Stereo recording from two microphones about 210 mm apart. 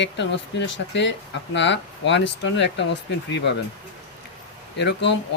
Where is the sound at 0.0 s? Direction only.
60° left (ahead or behind).